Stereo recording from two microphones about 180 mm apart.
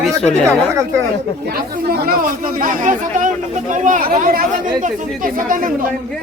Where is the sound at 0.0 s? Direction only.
5° left (ahead or behind).